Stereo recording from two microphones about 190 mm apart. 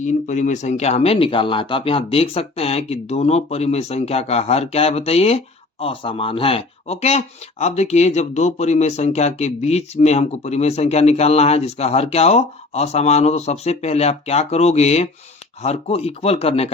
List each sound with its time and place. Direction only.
0.0 s speech: 40° left (ahead or behind)